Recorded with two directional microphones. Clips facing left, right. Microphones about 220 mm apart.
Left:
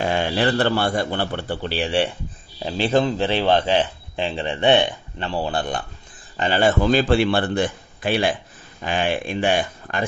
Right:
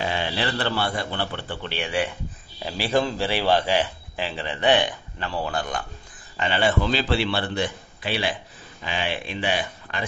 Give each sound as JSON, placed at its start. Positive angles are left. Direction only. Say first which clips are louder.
{"t": 0.0, "sound": "a man's voice", "louder": "left 6 dB", "side_deg": 50}